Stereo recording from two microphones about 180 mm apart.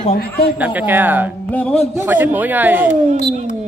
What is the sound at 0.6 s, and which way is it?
Speech, 10° right (ahead or behind).